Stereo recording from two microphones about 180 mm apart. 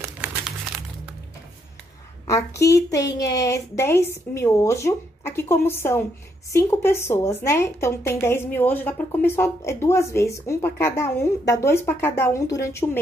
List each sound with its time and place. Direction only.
2.2 s a woman's voice: 15° left (ahead or behind)